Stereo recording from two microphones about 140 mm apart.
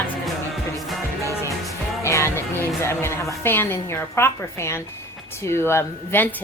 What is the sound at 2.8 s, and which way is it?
A woman's voice, 20° left (ahead or behind).